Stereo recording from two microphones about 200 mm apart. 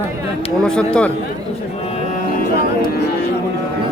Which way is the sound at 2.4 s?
45° left (ahead or behind).